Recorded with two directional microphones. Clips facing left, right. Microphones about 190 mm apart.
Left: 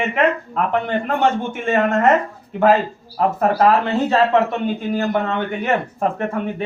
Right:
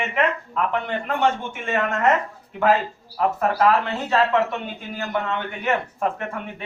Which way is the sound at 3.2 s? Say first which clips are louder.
Left 4 dB; 35° left (ahead or behind).